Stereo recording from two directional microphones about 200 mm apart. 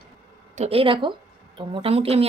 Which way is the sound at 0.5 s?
30° right (ahead or behind).